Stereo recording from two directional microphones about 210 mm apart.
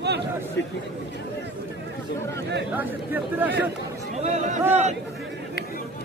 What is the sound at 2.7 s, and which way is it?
Speech, 10° right (ahead or behind).